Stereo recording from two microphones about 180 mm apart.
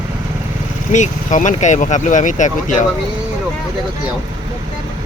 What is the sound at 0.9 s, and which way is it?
Speech, 45° left (ahead or behind).